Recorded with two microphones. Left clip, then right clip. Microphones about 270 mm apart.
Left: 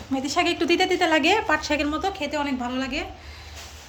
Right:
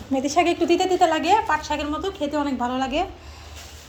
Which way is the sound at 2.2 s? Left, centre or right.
Centre.